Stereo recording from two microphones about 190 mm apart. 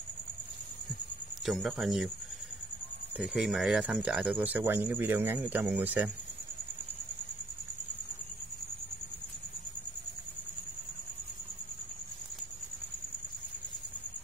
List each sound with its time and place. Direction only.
1.4 s speech: centre (ahead or behind)
3.2 s speech: centre (ahead or behind)